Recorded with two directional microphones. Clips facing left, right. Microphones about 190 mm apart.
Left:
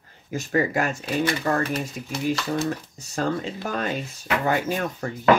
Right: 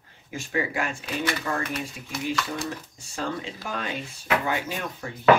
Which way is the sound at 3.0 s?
40° left (ahead or behind).